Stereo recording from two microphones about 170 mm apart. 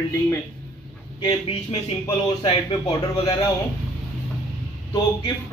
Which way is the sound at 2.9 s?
20° left (ahead or behind).